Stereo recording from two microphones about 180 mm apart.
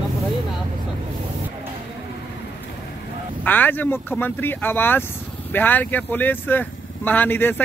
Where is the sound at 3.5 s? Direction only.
10° left (ahead or behind).